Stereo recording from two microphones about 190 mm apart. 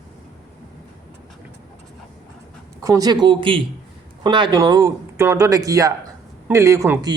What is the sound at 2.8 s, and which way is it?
A man's voice, 20° right (ahead or behind).